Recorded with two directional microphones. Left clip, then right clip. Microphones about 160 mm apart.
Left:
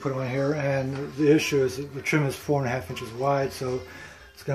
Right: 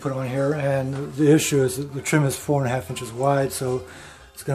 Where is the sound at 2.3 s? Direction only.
15° right (ahead or behind).